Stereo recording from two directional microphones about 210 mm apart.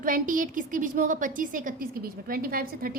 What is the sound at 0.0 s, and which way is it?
A woman's voice, 40° right (ahead or behind).